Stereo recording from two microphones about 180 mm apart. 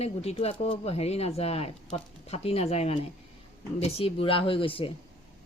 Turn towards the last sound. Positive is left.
turn(degrees=30)  # may be behind; listen again after turning